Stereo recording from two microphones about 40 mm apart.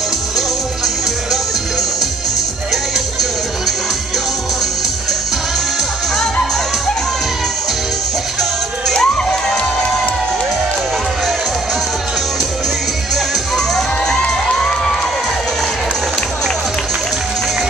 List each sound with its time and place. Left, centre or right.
1.3 s music: centre
8.9 s crowd: centre
13.1 s music: centre
14.2 s cheering: centre